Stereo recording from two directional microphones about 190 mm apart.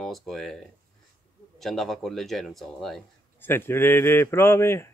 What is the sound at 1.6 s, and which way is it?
Speech, centre (ahead or behind).